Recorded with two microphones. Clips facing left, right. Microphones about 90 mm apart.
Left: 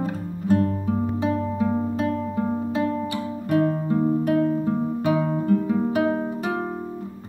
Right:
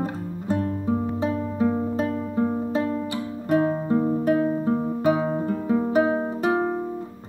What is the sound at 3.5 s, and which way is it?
Music, 30° right (ahead or behind).